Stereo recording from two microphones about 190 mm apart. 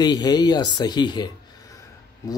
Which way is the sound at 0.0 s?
20° left (ahead or behind).